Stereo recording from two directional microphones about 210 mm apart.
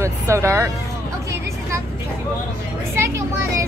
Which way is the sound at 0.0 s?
15° right (ahead or behind).